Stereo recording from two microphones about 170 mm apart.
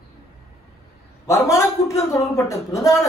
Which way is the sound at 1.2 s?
15° left (ahead or behind).